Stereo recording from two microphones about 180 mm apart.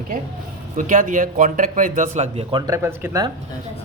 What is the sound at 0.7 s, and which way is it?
A man's voice, 45° right (ahead or behind).